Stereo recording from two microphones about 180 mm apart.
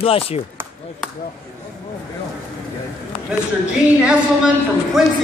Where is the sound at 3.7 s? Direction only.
5° right (ahead or behind).